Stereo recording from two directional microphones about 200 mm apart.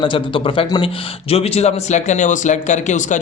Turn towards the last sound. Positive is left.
turn(degrees=35)  # may be behind; listen again after turning